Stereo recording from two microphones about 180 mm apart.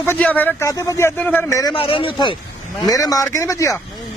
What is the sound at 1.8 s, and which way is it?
Speech, 30° left (ahead or behind).